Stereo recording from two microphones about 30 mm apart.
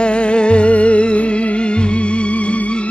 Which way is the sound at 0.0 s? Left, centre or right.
Left.